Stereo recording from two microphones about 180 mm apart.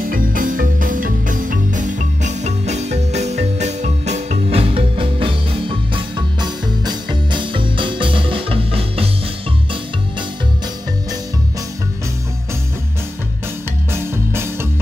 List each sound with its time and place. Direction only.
0.1 s music: 50° right (ahead or behind); by 9.1 s 30° right (ahead or behind)
14.1 s music: 15° right (ahead or behind)